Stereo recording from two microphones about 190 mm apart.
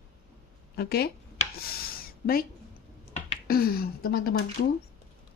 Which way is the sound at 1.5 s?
50° left (ahead or behind).